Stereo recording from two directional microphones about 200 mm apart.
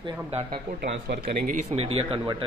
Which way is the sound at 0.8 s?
50° right (ahead or behind).